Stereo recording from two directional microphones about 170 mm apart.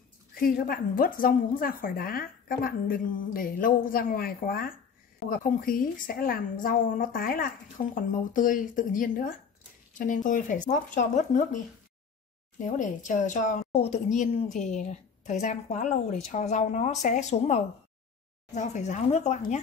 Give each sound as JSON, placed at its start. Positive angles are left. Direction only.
{"t": 0.7, "sound": "speech", "side_deg": 55}